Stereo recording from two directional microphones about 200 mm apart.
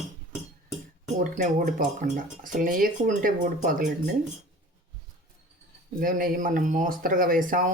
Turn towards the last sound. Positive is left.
turn(degrees=-45)  # may be behind; listen again after turning